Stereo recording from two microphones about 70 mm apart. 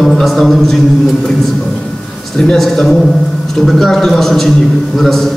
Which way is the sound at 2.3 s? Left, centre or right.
Centre.